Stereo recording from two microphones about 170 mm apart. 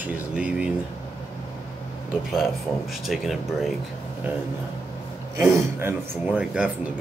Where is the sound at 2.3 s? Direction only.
Centre (ahead or behind).